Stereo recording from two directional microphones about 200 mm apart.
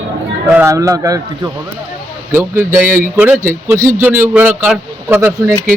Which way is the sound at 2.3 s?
10° right (ahead or behind).